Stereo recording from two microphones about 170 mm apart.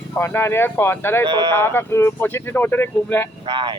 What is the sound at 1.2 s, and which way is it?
Speech, 25° right (ahead or behind).